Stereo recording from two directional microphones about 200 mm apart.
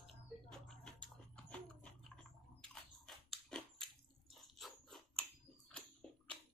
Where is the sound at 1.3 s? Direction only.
5° left (ahead or behind).